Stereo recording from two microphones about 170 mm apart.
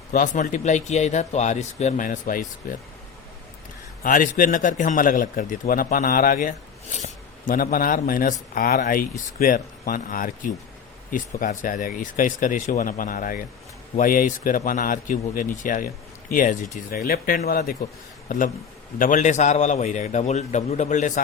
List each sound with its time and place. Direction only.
0.1 s speech: 50° left (ahead or behind)
4.0 s speech: 50° left (ahead or behind)
18.3 s speech: 50° left (ahead or behind)